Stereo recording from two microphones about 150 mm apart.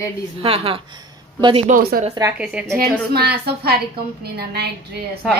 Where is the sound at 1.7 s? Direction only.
70° right (ahead or behind).